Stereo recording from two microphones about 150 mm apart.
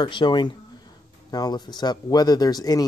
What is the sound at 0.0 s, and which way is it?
A man's voice, 30° left (ahead or behind).